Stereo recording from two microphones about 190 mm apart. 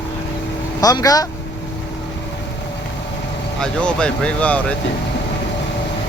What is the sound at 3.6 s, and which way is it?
Speech, 5° left (ahead or behind).